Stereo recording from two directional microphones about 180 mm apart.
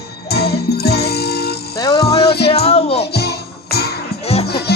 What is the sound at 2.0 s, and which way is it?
Music, 30° left (ahead or behind).